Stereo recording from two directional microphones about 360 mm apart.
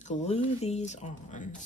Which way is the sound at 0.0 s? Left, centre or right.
Centre.